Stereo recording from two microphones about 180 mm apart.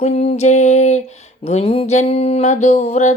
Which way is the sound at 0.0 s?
40° left (ahead or behind).